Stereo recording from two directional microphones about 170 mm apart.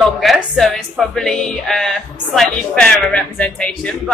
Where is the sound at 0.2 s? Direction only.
Centre (ahead or behind).